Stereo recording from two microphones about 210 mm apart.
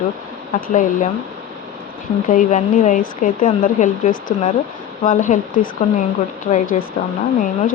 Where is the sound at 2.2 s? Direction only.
35° left (ahead or behind).